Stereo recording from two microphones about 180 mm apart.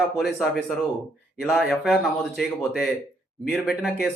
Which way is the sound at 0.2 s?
Centre (ahead or behind).